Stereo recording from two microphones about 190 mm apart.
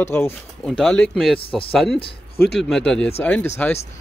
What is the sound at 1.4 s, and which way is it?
Speech, 30° left (ahead or behind).